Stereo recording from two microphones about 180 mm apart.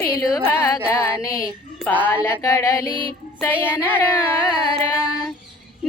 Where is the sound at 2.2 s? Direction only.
15° left (ahead or behind).